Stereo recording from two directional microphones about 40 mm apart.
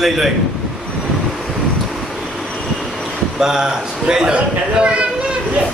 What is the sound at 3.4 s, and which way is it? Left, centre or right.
A man's voice, centre.